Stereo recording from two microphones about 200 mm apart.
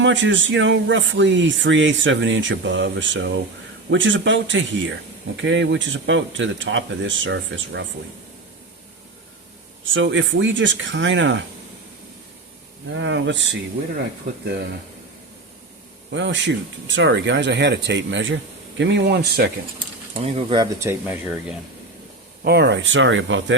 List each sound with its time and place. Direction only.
0.0 s speech: 65° right (ahead or behind)
9.8 s speech: 70° right (ahead or behind)
12.9 s speech: 65° right (ahead or behind)
16.1 s speech: 65° right (ahead or behind)
20.1 s speech: 30° right (ahead or behind)
20.7 s speech: 10° right (ahead or behind)
22.4 s speech: 55° right (ahead or behind)